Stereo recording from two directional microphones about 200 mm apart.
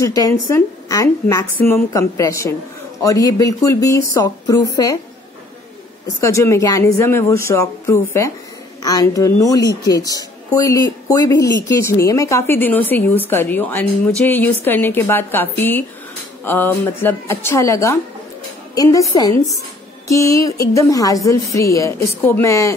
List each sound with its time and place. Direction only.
0.0 s speech: 15° left (ahead or behind)
6.2 s speech: 15° left (ahead or behind)